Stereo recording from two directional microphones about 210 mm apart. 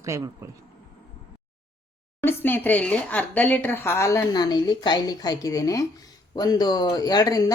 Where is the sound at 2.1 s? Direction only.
10° left (ahead or behind).